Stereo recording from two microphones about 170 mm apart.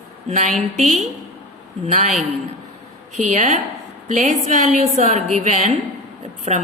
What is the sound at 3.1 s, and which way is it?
A woman's voice, 45° right (ahead or behind).